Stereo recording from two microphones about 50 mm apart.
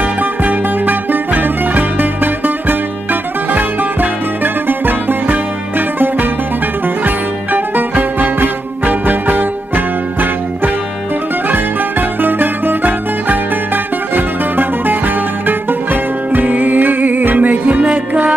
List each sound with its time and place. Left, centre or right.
0.2 s music: right
7.5 s music: right
12.2 s music: right